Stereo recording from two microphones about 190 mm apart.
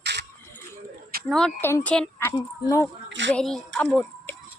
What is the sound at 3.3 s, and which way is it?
Speech, centre (ahead or behind).